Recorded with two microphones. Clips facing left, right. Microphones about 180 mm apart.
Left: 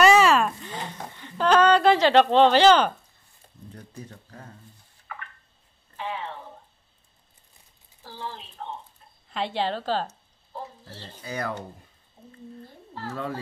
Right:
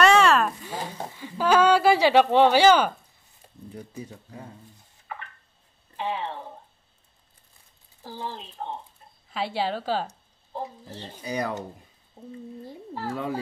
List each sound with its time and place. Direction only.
0.0 s a sound: 5° left (ahead or behind)
3.7 s speech: 10° right (ahead or behind)
8.0 s speech: 15° right (ahead or behind)
9.3 s speech: 5° right (ahead or behind)
13.0 s speech: 15° right (ahead or behind)